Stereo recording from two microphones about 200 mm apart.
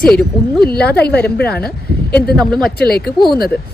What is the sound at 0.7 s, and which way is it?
Speech, 50° left (ahead or behind).